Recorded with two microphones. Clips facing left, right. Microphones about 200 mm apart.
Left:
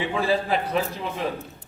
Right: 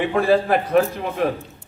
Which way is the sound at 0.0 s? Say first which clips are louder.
Right 6 dB; 60° right (ahead or behind).